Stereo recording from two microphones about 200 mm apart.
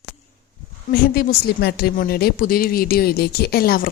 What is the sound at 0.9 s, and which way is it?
A woman's voice, 50° left (ahead or behind).